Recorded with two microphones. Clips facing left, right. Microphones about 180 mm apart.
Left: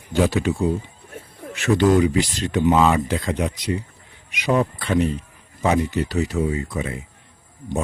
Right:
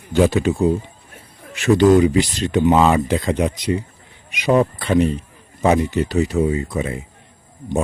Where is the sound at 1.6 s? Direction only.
25° right (ahead or behind).